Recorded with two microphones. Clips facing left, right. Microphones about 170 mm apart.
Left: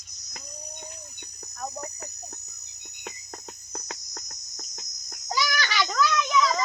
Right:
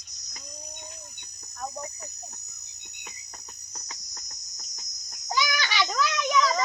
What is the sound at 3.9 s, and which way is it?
Cricket, 50° left (ahead or behind).